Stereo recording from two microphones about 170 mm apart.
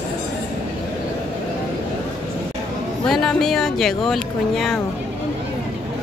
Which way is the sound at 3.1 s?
5° left (ahead or behind).